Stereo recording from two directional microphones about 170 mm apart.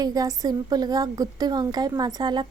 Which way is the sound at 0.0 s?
20° right (ahead or behind).